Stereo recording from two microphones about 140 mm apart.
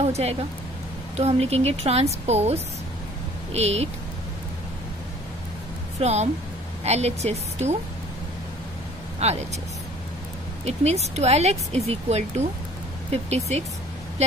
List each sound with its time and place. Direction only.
0.0 s speech: 50° right (ahead or behind)
5.9 s a woman's voice: 50° right (ahead or behind)
9.2 s speech: 50° right (ahead or behind)
10.6 s speech: 50° right (ahead or behind)